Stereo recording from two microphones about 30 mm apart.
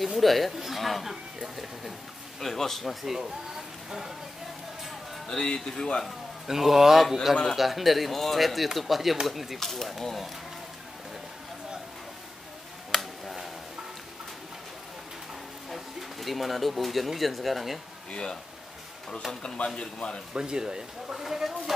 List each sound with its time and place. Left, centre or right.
0.0 s speech: centre
2.4 s speech: centre
5.3 s speech: left
6.4 s a man's voice: centre
9.6 s speech: centre
12.9 s finger snapping: centre
15.7 s speech: centre
19.4 s a man's voice: left
20.3 s speech: right
21.1 s a man's voice: centre